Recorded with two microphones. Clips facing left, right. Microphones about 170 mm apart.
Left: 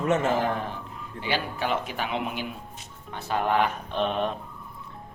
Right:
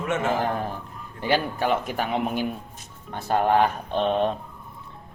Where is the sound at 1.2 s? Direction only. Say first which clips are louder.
Right 5 dB; 45° right (ahead or behind).